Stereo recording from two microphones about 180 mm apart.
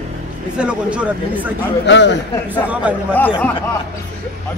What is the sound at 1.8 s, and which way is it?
Speech, 80° left.